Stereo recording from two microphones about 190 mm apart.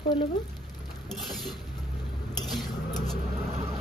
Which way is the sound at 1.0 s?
Centre (ahead or behind).